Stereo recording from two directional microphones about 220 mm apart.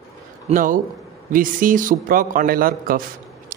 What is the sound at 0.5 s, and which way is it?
A man's voice, 40° right (ahead or behind).